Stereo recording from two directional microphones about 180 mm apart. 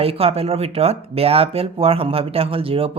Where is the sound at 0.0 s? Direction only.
30° right (ahead or behind).